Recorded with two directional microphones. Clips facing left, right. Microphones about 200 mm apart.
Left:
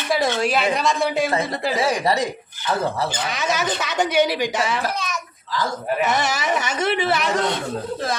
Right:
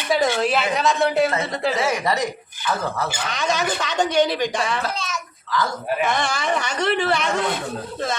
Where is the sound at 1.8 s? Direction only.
30° left (ahead or behind).